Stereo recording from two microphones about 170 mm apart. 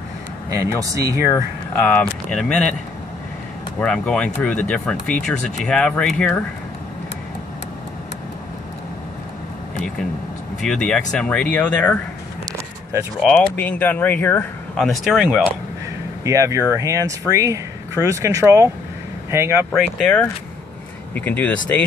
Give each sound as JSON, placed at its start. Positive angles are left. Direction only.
{"t": 0.5, "sound": "speech", "side_deg": -20}
{"t": 1.8, "sound": "speech", "side_deg": 5}
{"t": 3.8, "sound": "speech", "side_deg": 5}
{"t": 10.6, "sound": "speech", "side_deg": 5}
{"t": 13.2, "sound": "speech", "side_deg": 10}
{"t": 14.9, "sound": "speech", "side_deg": 0}
{"t": 16.3, "sound": "speech", "side_deg": -20}
{"t": 19.7, "sound": "speech", "side_deg": 5}